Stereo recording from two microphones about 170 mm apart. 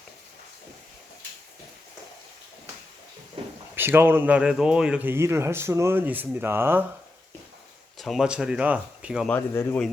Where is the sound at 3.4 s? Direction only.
35° right (ahead or behind).